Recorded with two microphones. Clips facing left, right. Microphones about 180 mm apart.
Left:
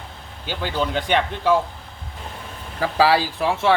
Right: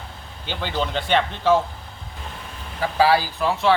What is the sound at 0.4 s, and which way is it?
Speech, 5° left (ahead or behind).